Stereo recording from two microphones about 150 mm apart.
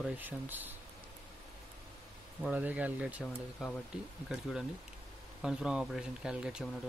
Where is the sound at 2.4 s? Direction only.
10° right (ahead or behind).